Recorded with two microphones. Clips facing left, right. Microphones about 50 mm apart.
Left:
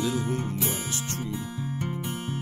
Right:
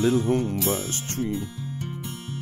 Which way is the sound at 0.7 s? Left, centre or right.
Right.